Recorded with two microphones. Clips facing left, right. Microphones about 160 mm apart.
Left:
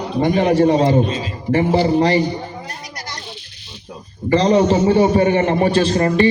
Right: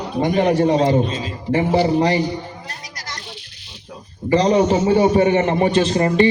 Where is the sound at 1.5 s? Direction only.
15° right (ahead or behind).